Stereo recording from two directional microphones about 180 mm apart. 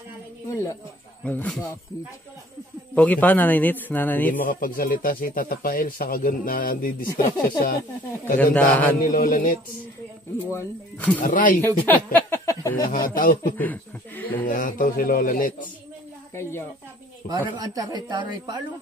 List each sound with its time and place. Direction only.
0.5 s snake: 15° left (ahead or behind)
1.2 s a man's voice: 10° left (ahead or behind)
2.9 s a man's voice: 5° left (ahead or behind)
4.3 s speech: 50° left (ahead or behind)
8.5 s a man's voice: 10° left (ahead or behind)
9.0 s speech: 50° left (ahead or behind)
10.5 s a man's voice: 15° left (ahead or behind)
11.1 s speech: 50° left (ahead or behind)
11.6 s speech: 10° left (ahead or behind)
12.9 s speech: 50° left (ahead or behind)
13.6 s a man's voice: 10° left (ahead or behind)
14.4 s speech: 50° left (ahead or behind)
16.3 s a man's voice: 15° left (ahead or behind)
17.6 s speech: 20° right (ahead or behind)